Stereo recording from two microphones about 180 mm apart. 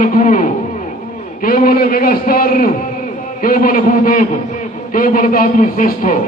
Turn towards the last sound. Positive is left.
turn(degrees=45)  # may be behind; listen again after turning